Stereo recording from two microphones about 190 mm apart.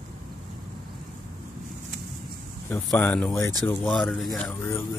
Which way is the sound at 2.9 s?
5° left (ahead or behind).